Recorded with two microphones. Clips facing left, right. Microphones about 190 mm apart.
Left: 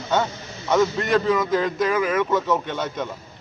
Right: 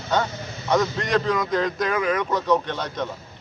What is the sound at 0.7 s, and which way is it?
A man's voice, 5° left (ahead or behind).